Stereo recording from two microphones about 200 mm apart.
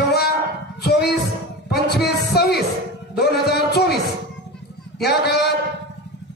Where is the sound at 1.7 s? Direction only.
55° left (ahead or behind).